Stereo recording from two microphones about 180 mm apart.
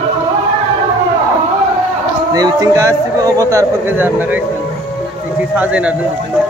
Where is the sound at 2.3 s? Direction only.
20° right (ahead or behind).